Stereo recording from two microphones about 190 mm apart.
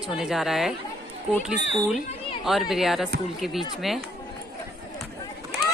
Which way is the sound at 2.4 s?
Centre (ahead or behind).